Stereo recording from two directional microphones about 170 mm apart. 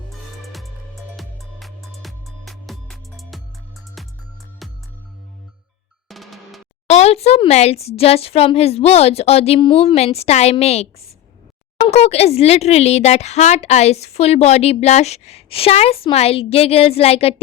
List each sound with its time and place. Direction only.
0.4 s music: centre (ahead or behind)
6.1 s drum: centre (ahead or behind)
6.8 s speech: 40° left (ahead or behind)